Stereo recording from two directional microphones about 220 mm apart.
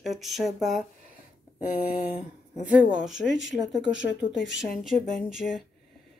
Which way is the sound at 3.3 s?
55° left (ahead or behind).